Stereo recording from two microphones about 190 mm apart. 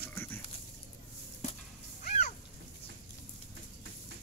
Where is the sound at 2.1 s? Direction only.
40° left (ahead or behind).